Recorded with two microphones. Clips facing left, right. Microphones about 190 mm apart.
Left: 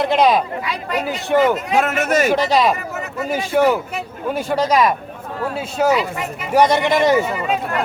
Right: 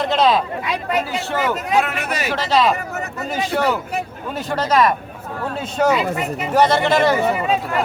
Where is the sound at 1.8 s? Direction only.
45° left (ahead or behind).